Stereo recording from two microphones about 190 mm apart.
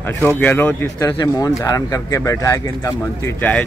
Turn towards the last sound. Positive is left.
turn(degrees=10)  # may be behind; listen again after turning